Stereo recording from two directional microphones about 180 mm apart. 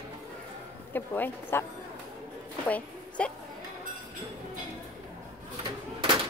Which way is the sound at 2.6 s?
10° left (ahead or behind).